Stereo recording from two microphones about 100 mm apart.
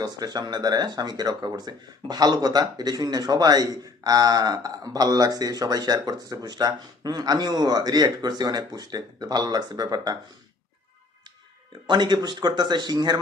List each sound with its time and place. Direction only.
0.0 s speech: 45° right (ahead or behind)
11.9 s speech: 50° right (ahead or behind)